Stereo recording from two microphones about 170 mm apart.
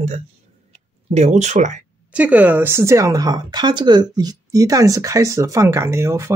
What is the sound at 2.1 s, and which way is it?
Speech, 10° right (ahead or behind).